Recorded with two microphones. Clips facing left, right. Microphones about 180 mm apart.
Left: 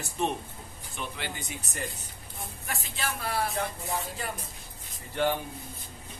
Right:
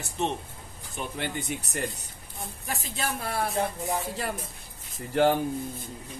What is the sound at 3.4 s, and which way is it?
Music, 20° right (ahead or behind).